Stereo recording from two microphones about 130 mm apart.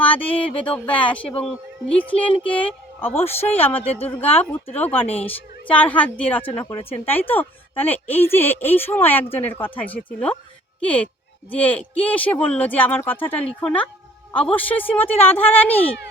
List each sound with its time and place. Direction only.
0.0 s a woman's voice: 10° left (ahead or behind)